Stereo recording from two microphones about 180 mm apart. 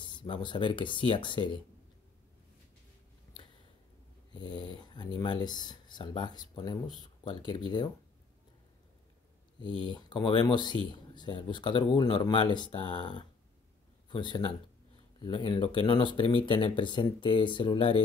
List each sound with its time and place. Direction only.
0.0 s speech: 25° left (ahead or behind)
4.3 s speech: 25° left (ahead or behind)
9.8 s speech: 25° left (ahead or behind)